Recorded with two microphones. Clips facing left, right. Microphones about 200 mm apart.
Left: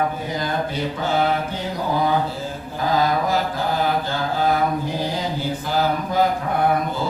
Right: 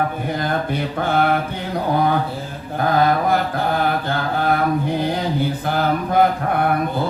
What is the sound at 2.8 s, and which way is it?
Mantra, 60° right (ahead or behind).